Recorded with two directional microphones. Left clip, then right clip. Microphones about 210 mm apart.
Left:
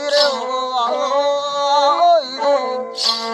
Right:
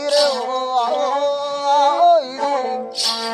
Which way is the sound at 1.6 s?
15° right (ahead or behind).